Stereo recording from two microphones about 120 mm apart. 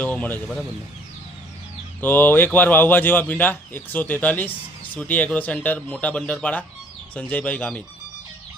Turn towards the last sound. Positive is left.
turn(degrees=10)  # may be behind; listen again after turning